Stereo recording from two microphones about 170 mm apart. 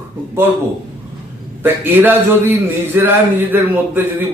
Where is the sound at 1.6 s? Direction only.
10° right (ahead or behind).